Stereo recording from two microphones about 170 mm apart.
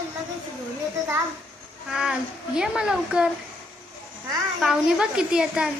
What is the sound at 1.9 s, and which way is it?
A woman's voice, 5° right (ahead or behind).